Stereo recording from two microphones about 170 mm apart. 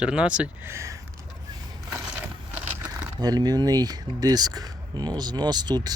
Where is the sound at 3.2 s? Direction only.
25° right (ahead or behind).